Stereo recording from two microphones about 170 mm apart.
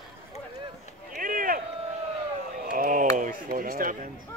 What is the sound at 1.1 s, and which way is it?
Run, 55° right (ahead or behind).